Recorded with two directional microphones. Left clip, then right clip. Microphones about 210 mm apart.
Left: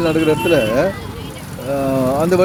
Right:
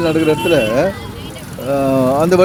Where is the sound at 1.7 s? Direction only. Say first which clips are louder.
Right 3 dB; 20° right (ahead or behind).